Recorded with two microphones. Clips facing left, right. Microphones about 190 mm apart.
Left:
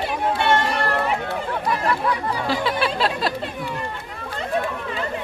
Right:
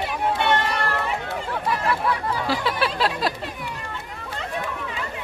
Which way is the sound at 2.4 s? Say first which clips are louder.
Left 2 dB; 5° right (ahead or behind).